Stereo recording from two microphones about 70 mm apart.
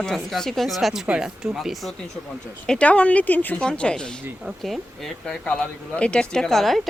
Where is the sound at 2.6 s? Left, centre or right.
Centre.